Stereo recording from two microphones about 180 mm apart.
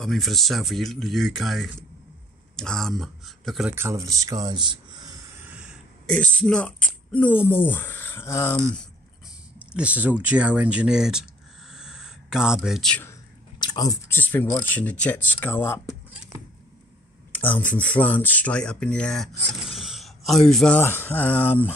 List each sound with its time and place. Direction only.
0.0 s speech: centre (ahead or behind)
3.7 s speech: 15° right (ahead or behind)
5.5 s a sound: 5° right (ahead or behind)
6.1 s speech: 5° left (ahead or behind)
9.6 s speech: 5° right (ahead or behind)
11.7 s a sound: 5° right (ahead or behind)
13.6 s speech: 20° left (ahead or behind)
17.3 s speech: 10° left (ahead or behind)